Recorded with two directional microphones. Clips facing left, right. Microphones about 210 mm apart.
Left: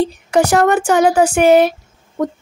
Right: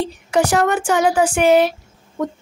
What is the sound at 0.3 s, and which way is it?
Speech, 45° left (ahead or behind).